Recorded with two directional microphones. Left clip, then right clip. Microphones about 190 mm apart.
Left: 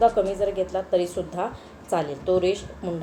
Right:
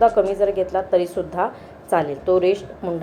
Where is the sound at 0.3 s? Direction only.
15° right (ahead or behind).